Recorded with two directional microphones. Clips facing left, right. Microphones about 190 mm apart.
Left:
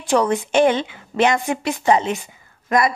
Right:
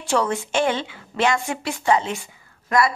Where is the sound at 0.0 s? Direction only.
15° left (ahead or behind).